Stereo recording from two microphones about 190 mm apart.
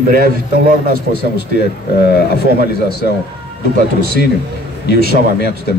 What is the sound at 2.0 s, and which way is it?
Speech, 55° left (ahead or behind).